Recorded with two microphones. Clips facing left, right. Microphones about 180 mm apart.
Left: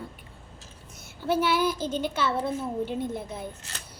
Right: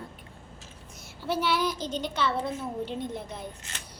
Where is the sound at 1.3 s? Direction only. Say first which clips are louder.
Left 3 dB; 5° left (ahead or behind).